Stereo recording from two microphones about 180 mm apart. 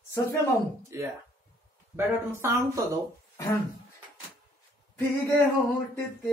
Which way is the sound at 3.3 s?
15° left (ahead or behind).